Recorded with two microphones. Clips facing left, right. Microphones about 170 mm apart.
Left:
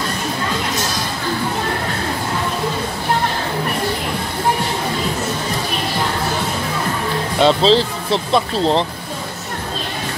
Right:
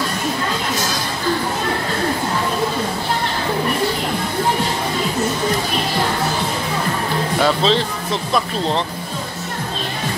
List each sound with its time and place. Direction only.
7.4 s speech: 30° left (ahead or behind)